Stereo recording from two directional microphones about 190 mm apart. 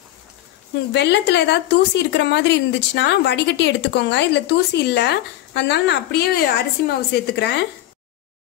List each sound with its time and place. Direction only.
0.9 s speech: 65° left (ahead or behind)